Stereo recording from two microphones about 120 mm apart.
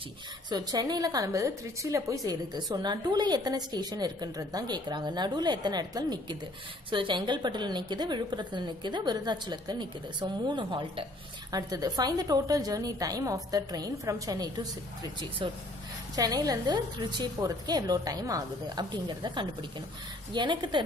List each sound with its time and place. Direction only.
0.5 s a woman's voice: 35° right (ahead or behind)
11.5 s a woman's voice: 30° right (ahead or behind)
16.2 s a woman's voice: 30° right (ahead or behind)